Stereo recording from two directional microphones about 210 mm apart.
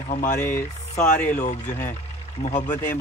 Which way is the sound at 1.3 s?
35° left (ahead or behind).